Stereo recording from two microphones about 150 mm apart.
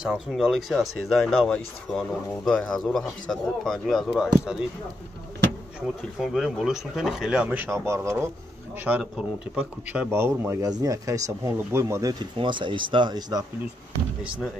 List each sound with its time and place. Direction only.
0.0 s speech: 5° right (ahead or behind)
6.2 s speech: centre (ahead or behind); by 13.4 s 30° right (ahead or behind)